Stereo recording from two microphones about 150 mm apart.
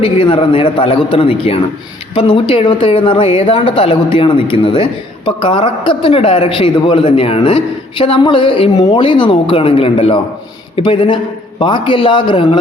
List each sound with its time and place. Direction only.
0.0 s speech: 35° left (ahead or behind)